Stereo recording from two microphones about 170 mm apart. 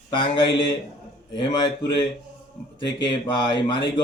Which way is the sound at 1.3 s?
25° left (ahead or behind).